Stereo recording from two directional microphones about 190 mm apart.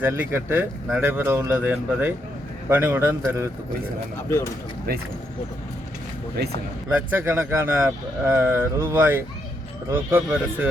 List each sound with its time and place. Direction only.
0.0 s speech: 10° right (ahead or behind)
4.3 s speech: 15° left (ahead or behind)
4.9 s speech: 55° right (ahead or behind)
7.1 s speech: 10° right (ahead or behind)